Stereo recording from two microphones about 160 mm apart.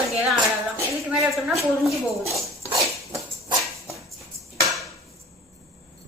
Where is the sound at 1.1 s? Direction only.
5° right (ahead or behind).